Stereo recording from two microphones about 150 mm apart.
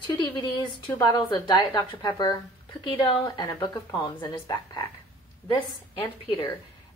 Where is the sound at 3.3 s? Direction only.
30° left (ahead or behind).